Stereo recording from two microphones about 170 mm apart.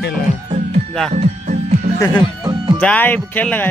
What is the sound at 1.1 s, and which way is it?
Music, 45° right (ahead or behind).